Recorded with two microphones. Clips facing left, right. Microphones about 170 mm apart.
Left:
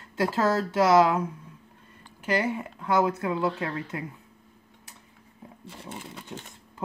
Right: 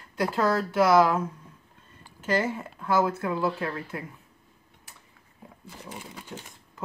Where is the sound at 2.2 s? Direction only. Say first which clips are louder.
Even; 15° left (ahead or behind).